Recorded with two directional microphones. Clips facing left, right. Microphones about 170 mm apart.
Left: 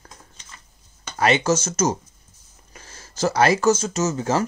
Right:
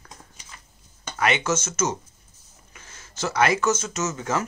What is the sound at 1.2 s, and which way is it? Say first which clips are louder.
Speech: left 4 dB; 35° left (ahead or behind).